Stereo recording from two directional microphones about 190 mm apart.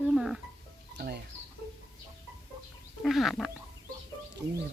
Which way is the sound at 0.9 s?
60° right (ahead or behind).